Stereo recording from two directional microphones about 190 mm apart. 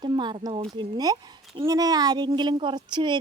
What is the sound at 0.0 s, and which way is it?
Speech, 20° right (ahead or behind).